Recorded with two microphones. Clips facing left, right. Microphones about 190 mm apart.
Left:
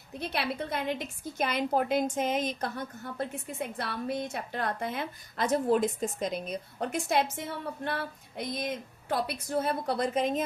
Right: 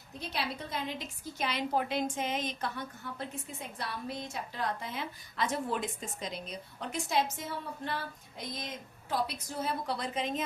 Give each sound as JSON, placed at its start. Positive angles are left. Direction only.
{"t": 0.2, "sound": "a woman's voice", "side_deg": 60}